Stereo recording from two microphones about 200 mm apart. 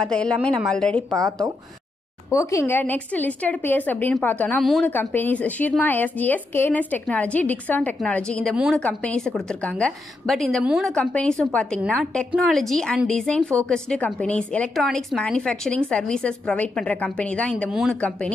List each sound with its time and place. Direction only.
0.0 s a woman's voice: 5° left (ahead or behind)
1.1 s speech: 15° right (ahead or behind)
2.3 s a woman's voice: 15° left (ahead or behind)